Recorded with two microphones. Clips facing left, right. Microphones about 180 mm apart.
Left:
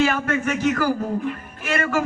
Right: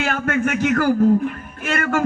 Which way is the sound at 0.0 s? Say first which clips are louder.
Even; 55° right (ahead or behind).